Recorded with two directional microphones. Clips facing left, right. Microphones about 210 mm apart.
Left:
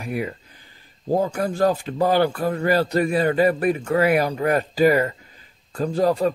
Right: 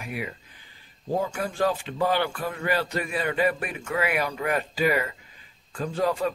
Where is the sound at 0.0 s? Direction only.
40° left (ahead or behind).